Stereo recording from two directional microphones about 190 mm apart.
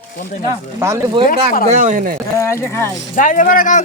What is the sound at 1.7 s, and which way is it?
Speech, 40° right (ahead or behind).